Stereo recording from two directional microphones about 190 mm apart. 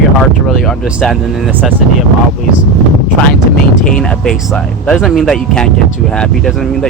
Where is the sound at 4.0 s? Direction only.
5° left (ahead or behind).